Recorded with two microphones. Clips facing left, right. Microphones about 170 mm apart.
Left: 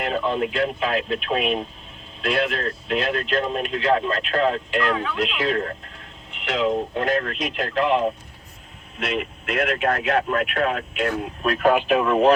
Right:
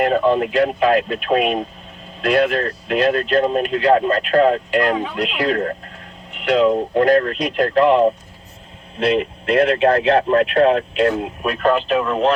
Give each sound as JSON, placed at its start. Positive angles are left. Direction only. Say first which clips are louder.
{"t": 0.0, "sound": "speech", "louder": "right 7 dB", "side_deg": -50}
{"t": 9.0, "sound": "speech", "louder": "right 9 dB", "side_deg": -30}
{"t": 11.4, "sound": "speech", "louder": "right 1 dB", "side_deg": 5}